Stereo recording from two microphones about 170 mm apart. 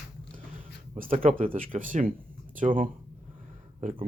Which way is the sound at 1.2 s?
55° right (ahead or behind).